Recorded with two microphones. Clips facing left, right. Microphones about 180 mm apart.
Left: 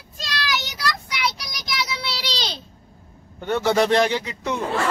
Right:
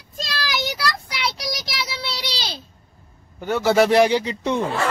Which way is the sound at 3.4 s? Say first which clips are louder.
Right 2 dB; 5° right (ahead or behind).